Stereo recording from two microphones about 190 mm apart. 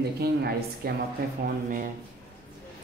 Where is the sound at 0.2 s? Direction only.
55° right (ahead or behind).